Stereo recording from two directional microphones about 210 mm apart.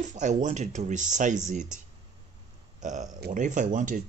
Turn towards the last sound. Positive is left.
turn(degrees=-35)  # may be behind; listen again after turning